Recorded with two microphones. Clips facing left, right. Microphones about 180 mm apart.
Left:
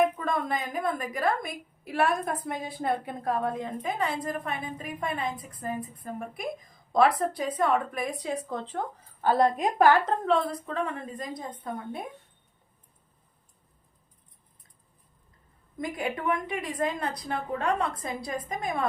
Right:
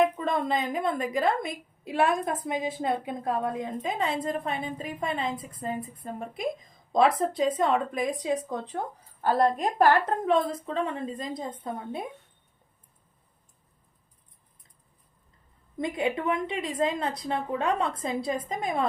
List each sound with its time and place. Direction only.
0.0 s speech: 25° right (ahead or behind)
10.2 s speech: 20° right (ahead or behind)
15.8 s speech: 25° right (ahead or behind)